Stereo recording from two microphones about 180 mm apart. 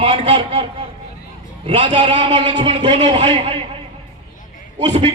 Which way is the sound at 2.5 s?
35° right (ahead or behind).